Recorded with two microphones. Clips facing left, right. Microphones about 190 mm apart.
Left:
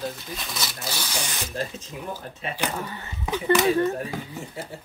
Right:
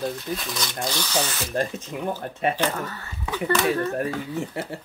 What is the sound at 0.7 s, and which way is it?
Speech, 10° left (ahead or behind).